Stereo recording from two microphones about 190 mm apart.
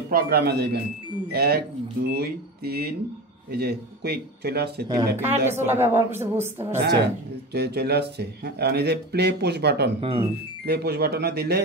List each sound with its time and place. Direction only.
0.1 s speech: 55° right (ahead or behind)
4.8 s a woman's voice: 15° right (ahead or behind)
7.5 s speech: 60° right (ahead or behind)
9.9 s speech: 30° right (ahead or behind)
10.6 s speech: 60° right (ahead or behind)